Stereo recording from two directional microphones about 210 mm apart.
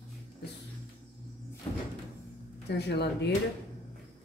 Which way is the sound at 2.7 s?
50° left (ahead or behind).